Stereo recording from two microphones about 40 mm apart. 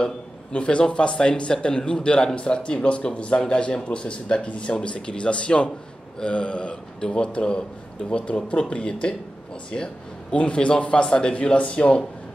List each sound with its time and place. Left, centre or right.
0.0 s speech: left
10.3 s speech: left